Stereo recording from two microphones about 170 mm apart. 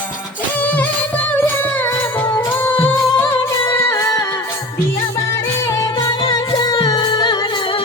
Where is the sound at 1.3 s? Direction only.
10° left (ahead or behind).